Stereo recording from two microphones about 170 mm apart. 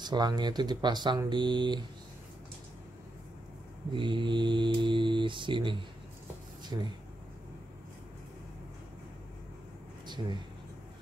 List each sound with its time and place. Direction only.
0.0 s speech: 25° right (ahead or behind)
3.9 s speech: 30° right (ahead or behind)
10.0 s speech: 25° right (ahead or behind)